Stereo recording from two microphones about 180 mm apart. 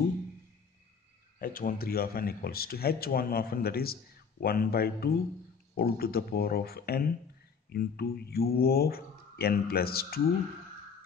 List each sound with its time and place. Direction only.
1.4 s speech: 50° left (ahead or behind)